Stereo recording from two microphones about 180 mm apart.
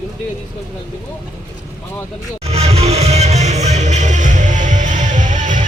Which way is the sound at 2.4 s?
35° right (ahead or behind).